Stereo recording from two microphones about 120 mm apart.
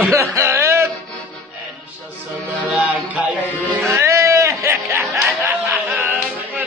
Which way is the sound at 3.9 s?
25° right (ahead or behind).